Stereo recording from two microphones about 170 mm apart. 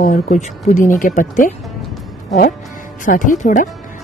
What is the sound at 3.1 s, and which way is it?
Speech, 50° left (ahead or behind).